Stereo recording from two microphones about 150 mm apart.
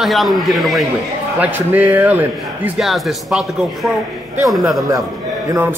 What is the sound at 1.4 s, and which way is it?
A man's voice, 10° right (ahead or behind).